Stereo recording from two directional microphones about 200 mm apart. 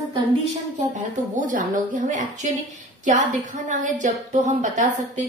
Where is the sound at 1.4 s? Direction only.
40° right (ahead or behind).